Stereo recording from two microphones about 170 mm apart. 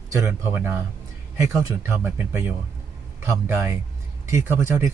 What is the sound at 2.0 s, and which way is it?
Speech, 10° right (ahead or behind).